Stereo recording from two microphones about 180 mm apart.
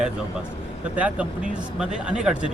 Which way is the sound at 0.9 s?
5° right (ahead or behind).